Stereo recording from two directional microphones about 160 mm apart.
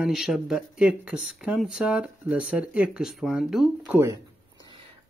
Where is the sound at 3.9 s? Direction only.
20° right (ahead or behind).